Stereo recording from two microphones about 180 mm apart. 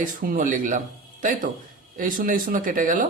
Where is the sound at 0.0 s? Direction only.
50° right (ahead or behind).